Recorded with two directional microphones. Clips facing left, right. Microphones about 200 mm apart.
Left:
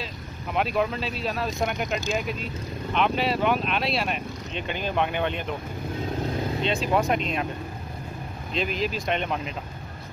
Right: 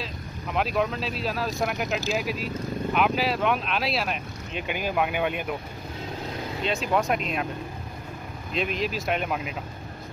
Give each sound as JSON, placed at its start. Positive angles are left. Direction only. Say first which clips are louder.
{"t": 0.0, "sound": "speech", "louder": "even", "side_deg": 0}
{"t": 6.6, "sound": "speech", "louder": "even", "side_deg": 0}
{"t": 8.5, "sound": "speech", "louder": "even", "side_deg": 0}